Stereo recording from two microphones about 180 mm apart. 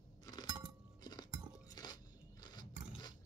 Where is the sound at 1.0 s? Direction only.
20° left (ahead or behind).